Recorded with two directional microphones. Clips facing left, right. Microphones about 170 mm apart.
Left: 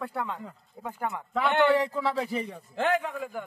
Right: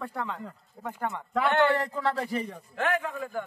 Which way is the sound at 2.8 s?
25° left (ahead or behind).